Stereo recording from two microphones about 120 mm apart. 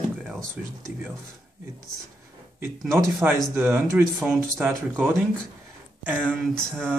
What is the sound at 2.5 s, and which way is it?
Speech, 20° right (ahead or behind).